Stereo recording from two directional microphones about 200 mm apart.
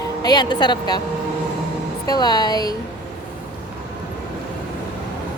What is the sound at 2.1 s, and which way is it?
Speech, 20° left (ahead or behind).